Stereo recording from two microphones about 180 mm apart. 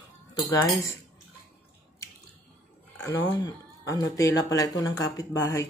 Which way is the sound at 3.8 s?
20° left (ahead or behind).